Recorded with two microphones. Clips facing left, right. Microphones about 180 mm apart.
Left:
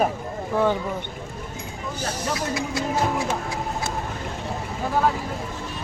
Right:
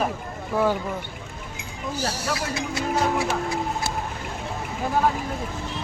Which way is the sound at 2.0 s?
10° right (ahead or behind).